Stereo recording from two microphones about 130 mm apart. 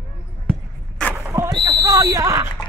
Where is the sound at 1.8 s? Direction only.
30° right (ahead or behind).